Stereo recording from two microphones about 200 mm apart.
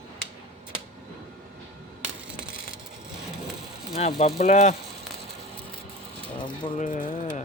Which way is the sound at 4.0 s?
30° left (ahead or behind).